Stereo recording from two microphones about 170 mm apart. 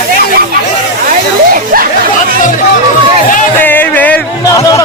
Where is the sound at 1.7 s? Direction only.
55° right (ahead or behind).